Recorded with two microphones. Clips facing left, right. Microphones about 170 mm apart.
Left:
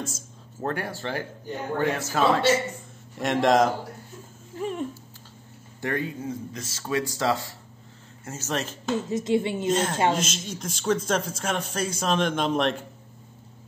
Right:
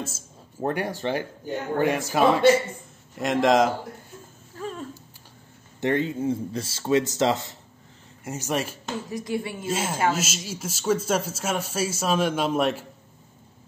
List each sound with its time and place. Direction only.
0.6 s a man's voice: 15° right (ahead or behind)
3.2 s a man's voice: centre (ahead or behind)
4.6 s a sound: 15° left (ahead or behind)
5.8 s a man's voice: 25° right (ahead or behind)
8.9 s speech: 25° left (ahead or behind)
9.7 s a man's voice: 5° right (ahead or behind)